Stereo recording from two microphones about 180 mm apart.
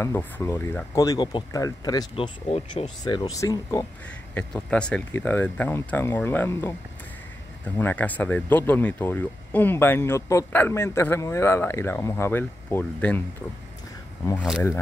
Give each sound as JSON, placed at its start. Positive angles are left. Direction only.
{"t": 0.0, "sound": "speech", "side_deg": 15}
{"t": 4.3, "sound": "speech", "side_deg": 5}
{"t": 14.2, "sound": "speech", "side_deg": 10}